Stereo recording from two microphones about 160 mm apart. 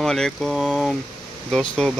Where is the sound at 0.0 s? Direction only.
5° left (ahead or behind).